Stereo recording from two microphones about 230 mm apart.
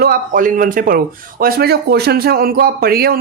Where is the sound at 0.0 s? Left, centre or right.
Right.